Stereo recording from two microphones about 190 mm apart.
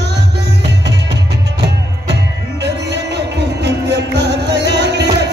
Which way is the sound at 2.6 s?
65° right (ahead or behind).